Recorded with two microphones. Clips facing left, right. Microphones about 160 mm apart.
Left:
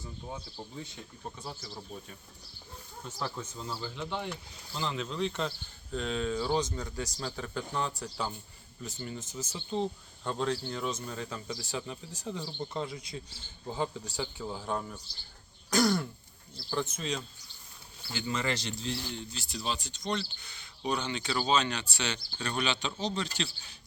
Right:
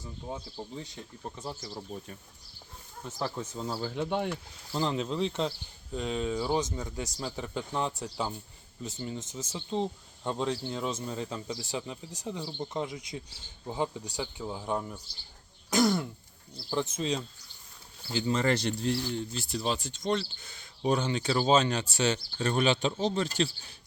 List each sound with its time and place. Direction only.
3.2 s speech: 40° right (ahead or behind)
4.7 s speech: 40° right (ahead or behind); by 8.0 s 20° right (ahead or behind)
8.0 s throat clearing: 20° right (ahead or behind)
8.8 s speech: 20° right (ahead or behind)
15.7 s throat clearing: 20° right (ahead or behind)
18.1 s speech: 35° right (ahead or behind)
18.5 s speech: 55° right (ahead or behind)